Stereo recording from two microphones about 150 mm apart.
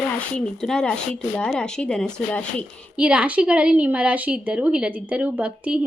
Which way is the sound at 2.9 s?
10° right (ahead or behind).